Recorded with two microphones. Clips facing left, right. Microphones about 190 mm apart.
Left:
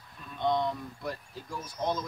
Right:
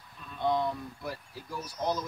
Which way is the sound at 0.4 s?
5° right (ahead or behind).